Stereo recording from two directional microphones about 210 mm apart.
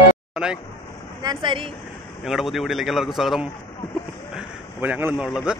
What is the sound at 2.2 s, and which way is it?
A man's voice, centre (ahead or behind).